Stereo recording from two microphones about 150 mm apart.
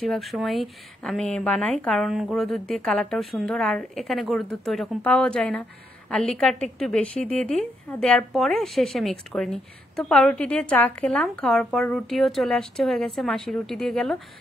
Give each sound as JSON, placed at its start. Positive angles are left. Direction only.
{"t": 0.0, "sound": "a woman's voice", "side_deg": 0}